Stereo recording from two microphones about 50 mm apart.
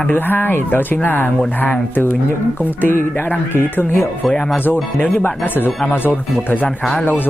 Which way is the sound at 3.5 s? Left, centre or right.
Left.